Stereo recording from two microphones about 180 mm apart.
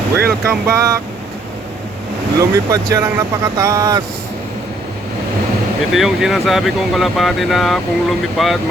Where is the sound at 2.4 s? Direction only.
20° right (ahead or behind).